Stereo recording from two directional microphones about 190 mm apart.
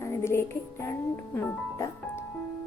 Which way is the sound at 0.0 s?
15° left (ahead or behind).